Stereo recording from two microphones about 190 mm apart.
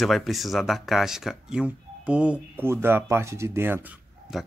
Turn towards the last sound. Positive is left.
turn(degrees=-5)  # may be behind; listen again after turning